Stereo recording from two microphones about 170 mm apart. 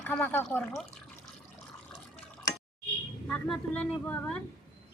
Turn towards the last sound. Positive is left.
turn(degrees=5)  # may be behind; listen again after turning